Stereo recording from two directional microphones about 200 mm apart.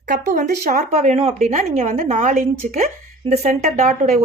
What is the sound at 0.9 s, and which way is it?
A woman's voice, 30° right (ahead or behind).